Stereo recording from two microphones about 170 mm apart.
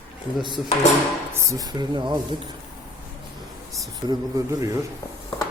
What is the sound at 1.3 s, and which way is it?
Speech, 20° right (ahead or behind).